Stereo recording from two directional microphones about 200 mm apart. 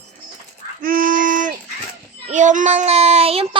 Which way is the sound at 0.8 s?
45° right (ahead or behind).